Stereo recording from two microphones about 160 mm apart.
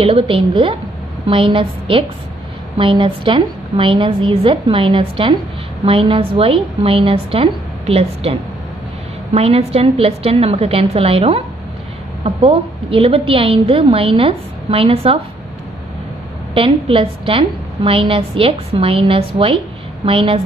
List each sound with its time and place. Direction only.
0.0 s a woman's voice: 35° right (ahead or behind)
16.5 s a woman's voice: 35° right (ahead or behind)